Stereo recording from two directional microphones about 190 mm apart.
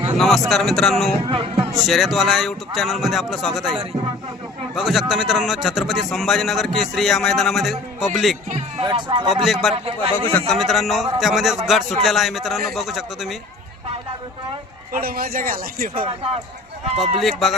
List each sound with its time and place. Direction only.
0.2 s speech: centre (ahead or behind)
8.8 s a man's voice: 25° right (ahead or behind)
9.3 s speech: centre (ahead or behind)
9.7 s a man's voice: 30° right (ahead or behind)
10.3 s speech: centre (ahead or behind)
14.9 s a man's voice: 50° right (ahead or behind)
16.0 s speech: 30° right (ahead or behind)
17.0 s speech: centre (ahead or behind)